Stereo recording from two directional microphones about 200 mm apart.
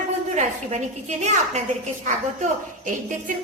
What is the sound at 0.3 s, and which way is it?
A woman's voice, 35° right (ahead or behind).